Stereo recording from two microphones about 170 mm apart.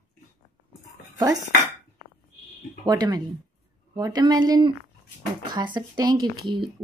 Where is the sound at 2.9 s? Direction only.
25° right (ahead or behind).